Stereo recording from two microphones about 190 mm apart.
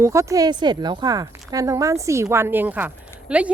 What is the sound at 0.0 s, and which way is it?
A woman's voice, 15° right (ahead or behind).